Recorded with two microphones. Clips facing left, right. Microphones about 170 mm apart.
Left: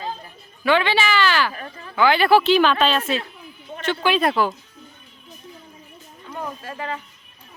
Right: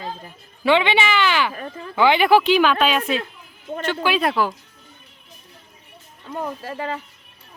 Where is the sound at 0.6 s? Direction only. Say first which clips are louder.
Right 1 dB; 20° right (ahead or behind).